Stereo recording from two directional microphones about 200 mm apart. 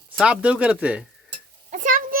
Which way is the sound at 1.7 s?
40° right (ahead or behind).